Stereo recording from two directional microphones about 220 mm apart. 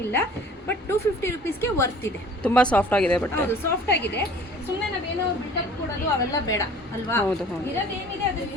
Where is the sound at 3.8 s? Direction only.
50° left (ahead or behind).